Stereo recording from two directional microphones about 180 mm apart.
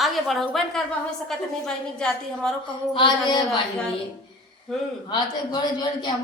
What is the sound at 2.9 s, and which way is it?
Speech, 25° left (ahead or behind).